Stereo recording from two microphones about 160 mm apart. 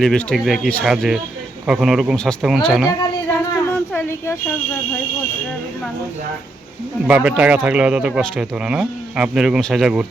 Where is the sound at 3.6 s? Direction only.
15° left (ahead or behind).